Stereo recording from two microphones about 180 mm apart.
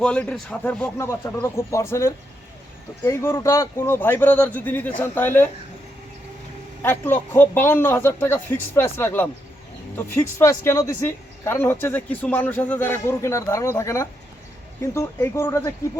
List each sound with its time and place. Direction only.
0.0 s speech: 5° left (ahead or behind)
6.8 s speech: 10° left (ahead or behind)